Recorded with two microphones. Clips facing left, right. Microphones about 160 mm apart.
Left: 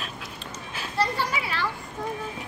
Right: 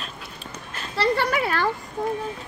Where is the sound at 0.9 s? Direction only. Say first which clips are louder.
Right 5 dB; 70° right (ahead or behind); by 1.7 s 50° right (ahead or behind).